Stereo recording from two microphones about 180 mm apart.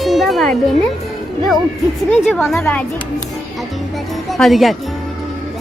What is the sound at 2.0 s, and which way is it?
Speech, 5° left (ahead or behind).